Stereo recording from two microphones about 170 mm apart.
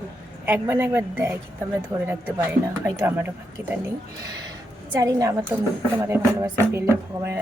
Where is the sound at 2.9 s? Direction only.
15° right (ahead or behind).